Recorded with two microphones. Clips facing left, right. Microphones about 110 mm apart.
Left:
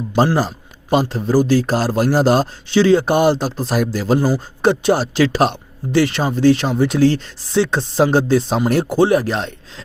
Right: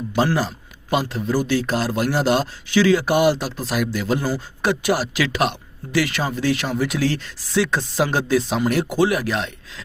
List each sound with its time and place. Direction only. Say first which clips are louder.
0.3 s speech: left 4 dB; 35° left (ahead or behind)